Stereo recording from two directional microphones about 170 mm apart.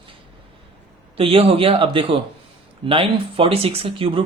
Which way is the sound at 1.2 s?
35° right (ahead or behind).